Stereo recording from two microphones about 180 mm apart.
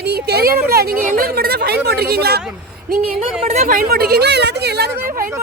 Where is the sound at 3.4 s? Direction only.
40° right (ahead or behind); by 5.3 s 55° right (ahead or behind).